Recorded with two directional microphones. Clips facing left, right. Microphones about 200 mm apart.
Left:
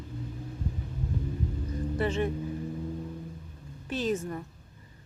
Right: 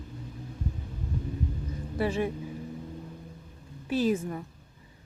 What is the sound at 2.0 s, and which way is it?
Speech, 10° right (ahead or behind).